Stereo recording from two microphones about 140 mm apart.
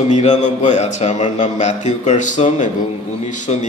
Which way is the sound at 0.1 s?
55° left (ahead or behind).